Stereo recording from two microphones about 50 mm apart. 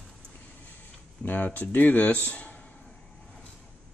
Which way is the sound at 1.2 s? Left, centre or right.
Left.